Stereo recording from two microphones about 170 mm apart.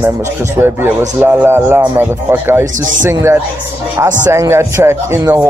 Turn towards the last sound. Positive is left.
turn(degrees=-15)  # may be behind; listen again after turning